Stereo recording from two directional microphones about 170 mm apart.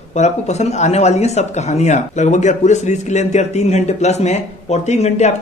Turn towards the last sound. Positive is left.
turn(degrees=40)  # may be behind; listen again after turning